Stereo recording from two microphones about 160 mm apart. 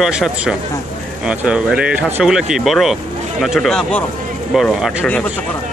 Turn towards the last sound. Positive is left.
turn(degrees=-5)  # may be behind; listen again after turning